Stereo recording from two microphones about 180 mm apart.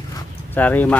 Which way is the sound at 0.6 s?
10° left (ahead or behind).